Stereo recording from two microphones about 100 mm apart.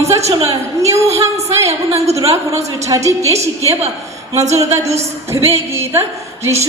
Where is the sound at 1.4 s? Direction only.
90° right.